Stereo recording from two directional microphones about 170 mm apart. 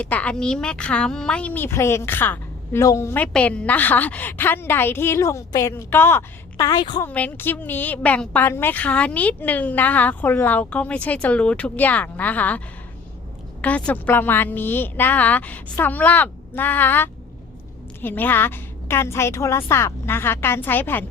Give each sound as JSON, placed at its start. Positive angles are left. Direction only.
{"t": 0.0, "sound": "a woman's voice", "side_deg": 10}
{"t": 7.0, "sound": "a woman's voice", "side_deg": 10}